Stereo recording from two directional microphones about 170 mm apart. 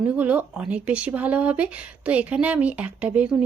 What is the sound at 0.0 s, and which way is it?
Speech, 10° right (ahead or behind).